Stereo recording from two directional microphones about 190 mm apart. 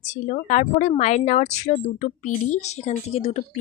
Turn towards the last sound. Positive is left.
turn(degrees=35)  # may be behind; listen again after turning